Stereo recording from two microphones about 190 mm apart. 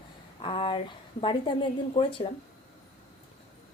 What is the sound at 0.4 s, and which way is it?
Speech, 25° left (ahead or behind).